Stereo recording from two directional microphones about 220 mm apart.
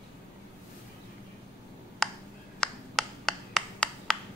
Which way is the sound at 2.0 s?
Centre (ahead or behind).